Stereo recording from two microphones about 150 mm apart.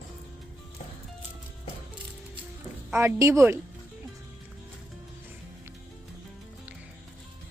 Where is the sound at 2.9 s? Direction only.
15° right (ahead or behind).